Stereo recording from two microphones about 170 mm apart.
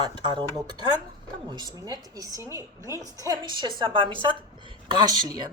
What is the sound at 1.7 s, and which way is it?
A woman's voice, 20° right (ahead or behind).